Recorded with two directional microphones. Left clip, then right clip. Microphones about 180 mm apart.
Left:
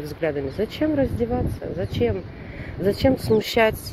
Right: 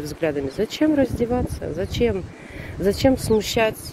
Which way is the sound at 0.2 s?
20° right (ahead or behind).